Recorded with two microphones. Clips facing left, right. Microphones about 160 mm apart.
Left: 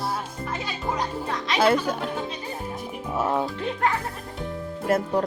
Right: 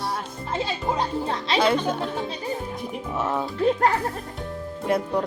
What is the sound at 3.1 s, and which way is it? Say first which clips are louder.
Speech: left 2 dB; 10° left (ahead or behind).